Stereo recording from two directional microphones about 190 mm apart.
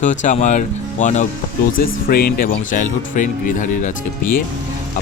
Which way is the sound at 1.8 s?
50° left (ahead or behind).